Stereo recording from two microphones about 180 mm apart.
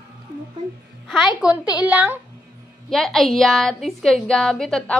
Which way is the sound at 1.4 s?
5° right (ahead or behind).